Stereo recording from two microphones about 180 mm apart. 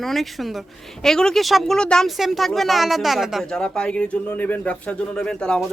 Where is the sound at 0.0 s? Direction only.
Centre (ahead or behind).